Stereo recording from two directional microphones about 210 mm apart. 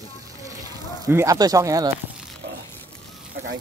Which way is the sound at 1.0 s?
15° right (ahead or behind).